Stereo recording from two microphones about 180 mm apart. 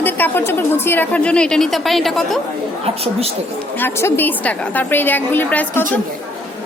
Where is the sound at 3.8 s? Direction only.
10° left (ahead or behind).